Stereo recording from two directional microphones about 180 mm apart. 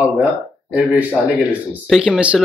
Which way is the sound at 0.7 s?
5° right (ahead or behind).